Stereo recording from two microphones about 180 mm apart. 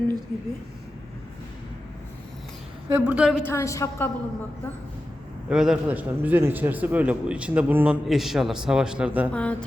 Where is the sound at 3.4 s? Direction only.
15° left (ahead or behind).